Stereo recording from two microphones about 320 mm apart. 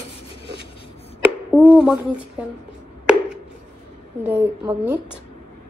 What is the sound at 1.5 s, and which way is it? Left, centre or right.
Speech, centre.